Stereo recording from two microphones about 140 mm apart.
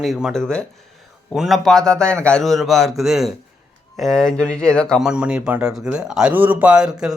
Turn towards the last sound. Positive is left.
turn(degrees=-5)  # may be behind; listen again after turning